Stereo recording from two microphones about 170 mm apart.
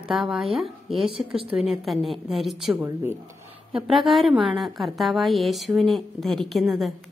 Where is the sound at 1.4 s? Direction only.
35° right (ahead or behind).